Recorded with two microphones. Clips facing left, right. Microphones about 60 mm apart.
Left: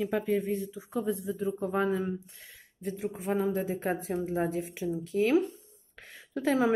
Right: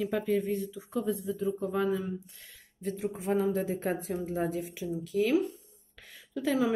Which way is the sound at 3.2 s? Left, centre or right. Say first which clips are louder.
Right 1 dB; left.